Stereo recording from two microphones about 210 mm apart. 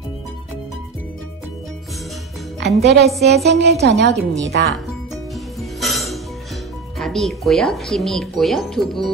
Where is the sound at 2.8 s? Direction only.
50° right (ahead or behind).